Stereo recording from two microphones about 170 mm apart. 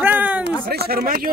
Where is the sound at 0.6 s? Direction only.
65° right (ahead or behind).